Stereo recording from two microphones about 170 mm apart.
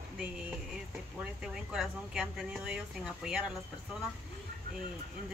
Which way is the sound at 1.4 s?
5° right (ahead or behind).